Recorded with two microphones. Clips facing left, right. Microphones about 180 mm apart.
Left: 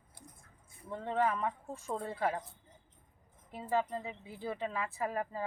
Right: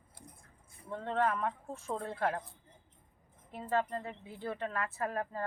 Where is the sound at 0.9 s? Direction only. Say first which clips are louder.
Even; 10° left (ahead or behind).